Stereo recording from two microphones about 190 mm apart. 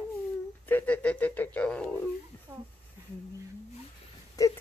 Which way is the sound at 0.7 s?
10° left (ahead or behind).